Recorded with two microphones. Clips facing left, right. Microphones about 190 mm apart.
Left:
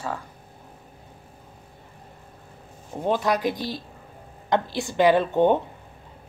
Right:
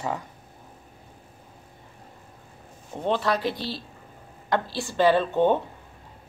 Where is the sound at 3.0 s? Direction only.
10° left (ahead or behind).